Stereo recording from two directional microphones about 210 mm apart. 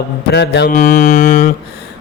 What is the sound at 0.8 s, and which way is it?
Mantra, 35° left (ahead or behind).